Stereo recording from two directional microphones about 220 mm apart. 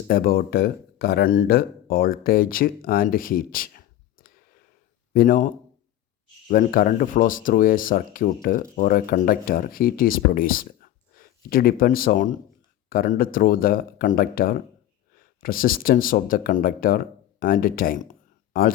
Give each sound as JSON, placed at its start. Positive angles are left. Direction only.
{"t": 0.1, "sound": "speech", "side_deg": 40}
{"t": 6.5, "sound": "speech", "side_deg": 40}